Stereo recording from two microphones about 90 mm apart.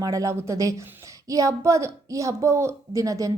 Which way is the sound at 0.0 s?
40° right (ahead or behind).